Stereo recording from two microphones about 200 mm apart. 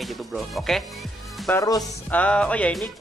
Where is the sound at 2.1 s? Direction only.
5° left (ahead or behind).